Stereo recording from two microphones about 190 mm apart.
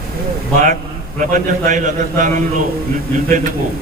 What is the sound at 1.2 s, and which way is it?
A man's voice, 40° right (ahead or behind).